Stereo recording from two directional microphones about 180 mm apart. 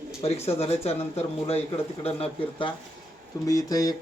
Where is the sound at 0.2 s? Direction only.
35° left (ahead or behind).